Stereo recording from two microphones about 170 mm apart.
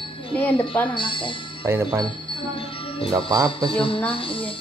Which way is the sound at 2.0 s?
30° left (ahead or behind).